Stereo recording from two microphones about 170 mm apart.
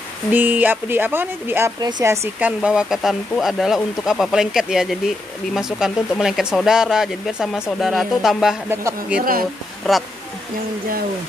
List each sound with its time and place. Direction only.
0.3 s speech: 10° right (ahead or behind)
1.8 s speech: 25° right (ahead or behind)
2.4 s speech: 5° right (ahead or behind)
8.6 s speech: 10° right (ahead or behind)
9.8 s speech: centre (ahead or behind)